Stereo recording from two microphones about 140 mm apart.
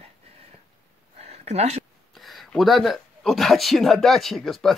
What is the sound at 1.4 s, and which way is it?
Speech, 50° right (ahead or behind).